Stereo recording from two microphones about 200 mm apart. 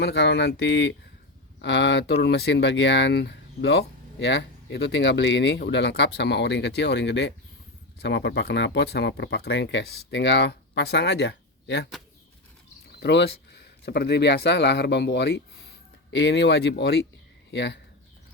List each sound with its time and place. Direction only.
0.0 s speech: 60° left (ahead or behind)
13.0 s speech: 60° left (ahead or behind)